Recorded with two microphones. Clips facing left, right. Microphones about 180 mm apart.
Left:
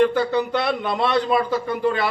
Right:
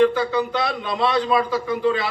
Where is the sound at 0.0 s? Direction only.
55° left (ahead or behind).